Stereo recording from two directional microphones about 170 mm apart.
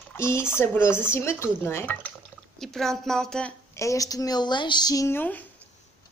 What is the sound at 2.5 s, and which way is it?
A woman's voice, centre (ahead or behind).